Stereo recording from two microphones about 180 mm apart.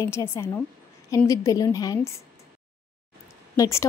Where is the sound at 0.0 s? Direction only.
15° left (ahead or behind).